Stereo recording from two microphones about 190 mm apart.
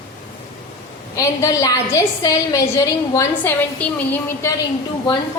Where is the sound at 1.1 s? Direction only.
15° left (ahead or behind).